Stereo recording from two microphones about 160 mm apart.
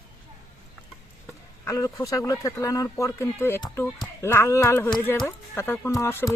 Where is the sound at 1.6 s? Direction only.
20° left (ahead or behind).